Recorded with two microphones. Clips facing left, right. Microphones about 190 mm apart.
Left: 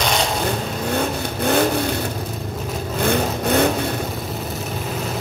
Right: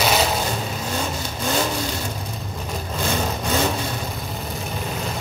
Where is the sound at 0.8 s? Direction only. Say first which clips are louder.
Left 5 dB; 60° left (ahead or behind).